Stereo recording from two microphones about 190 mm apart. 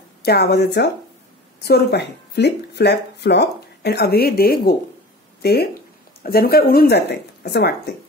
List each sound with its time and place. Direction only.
0.2 s speech: 60° left (ahead or behind)